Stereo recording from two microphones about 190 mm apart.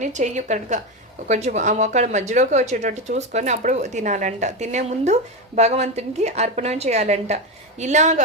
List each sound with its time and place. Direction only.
0.0 s speech: 40° right (ahead or behind)